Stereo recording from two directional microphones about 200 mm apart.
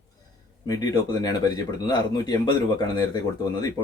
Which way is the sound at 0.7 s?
20° left (ahead or behind).